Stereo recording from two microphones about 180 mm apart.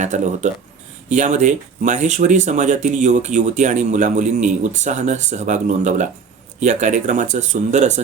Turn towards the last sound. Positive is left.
turn(degrees=-40)  # may be behind; listen again after turning